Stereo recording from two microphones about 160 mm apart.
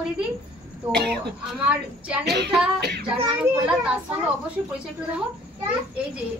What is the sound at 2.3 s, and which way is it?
Female singing, 90° right.